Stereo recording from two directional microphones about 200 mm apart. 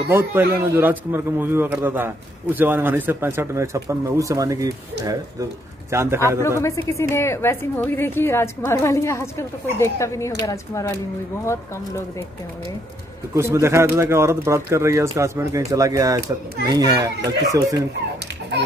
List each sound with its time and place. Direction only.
0.1 s a man's voice: 10° right (ahead or behind)
6.6 s a woman's voice: 15° left (ahead or behind)
13.3 s a man's voice: 15° right (ahead or behind)